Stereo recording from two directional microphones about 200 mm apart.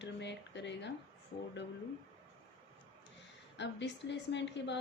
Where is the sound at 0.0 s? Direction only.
60° left (ahead or behind).